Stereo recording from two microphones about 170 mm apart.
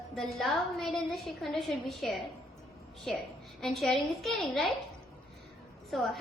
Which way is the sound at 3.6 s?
Centre (ahead or behind).